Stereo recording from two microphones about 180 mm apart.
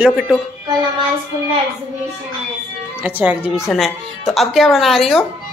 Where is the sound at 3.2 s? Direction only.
10° right (ahead or behind).